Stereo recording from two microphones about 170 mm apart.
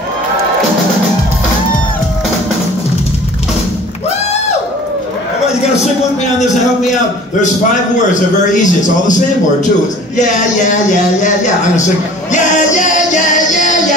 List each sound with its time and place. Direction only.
6.4 s a man's voice: centre (ahead or behind)
8.1 s speech: 50° left (ahead or behind)
10.1 s speech: 45° left (ahead or behind)
12.3 s music: 45° left (ahead or behind)